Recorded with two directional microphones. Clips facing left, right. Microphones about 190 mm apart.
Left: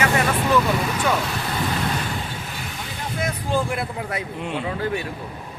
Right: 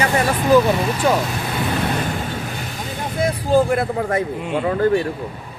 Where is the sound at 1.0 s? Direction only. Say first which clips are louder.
Right 5 dB; 35° right (ahead or behind).